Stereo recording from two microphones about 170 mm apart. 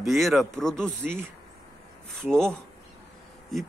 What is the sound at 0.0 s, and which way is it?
Speech, centre (ahead or behind).